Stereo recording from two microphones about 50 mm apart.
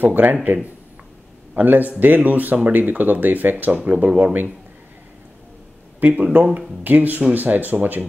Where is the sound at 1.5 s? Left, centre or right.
Right.